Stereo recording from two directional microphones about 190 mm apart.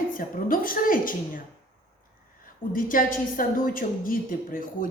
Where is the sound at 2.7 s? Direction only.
45° left (ahead or behind).